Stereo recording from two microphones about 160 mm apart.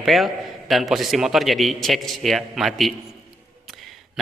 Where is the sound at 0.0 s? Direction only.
Centre (ahead or behind).